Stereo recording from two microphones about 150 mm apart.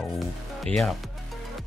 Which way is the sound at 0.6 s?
5° left (ahead or behind).